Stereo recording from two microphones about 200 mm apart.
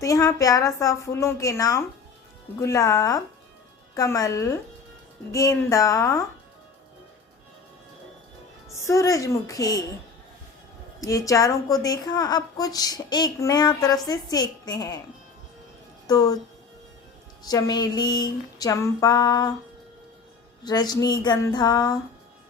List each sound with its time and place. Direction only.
0.0 s a woman's voice: 15° left (ahead or behind)
8.7 s a woman's voice: 15° left (ahead or behind)
11.0 s a woman's voice: 15° left (ahead or behind)
16.0 s a woman's voice: 20° left (ahead or behind)
17.4 s a woman's voice: 20° left (ahead or behind)
20.7 s a woman's voice: 20° left (ahead or behind)